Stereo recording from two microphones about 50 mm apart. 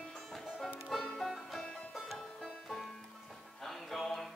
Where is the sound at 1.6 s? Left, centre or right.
Left.